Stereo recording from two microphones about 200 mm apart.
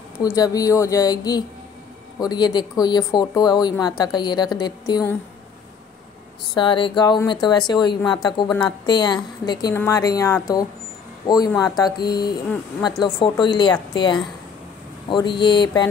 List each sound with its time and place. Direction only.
0.2 s speech: 15° left (ahead or behind)
6.5 s speech: 25° left (ahead or behind)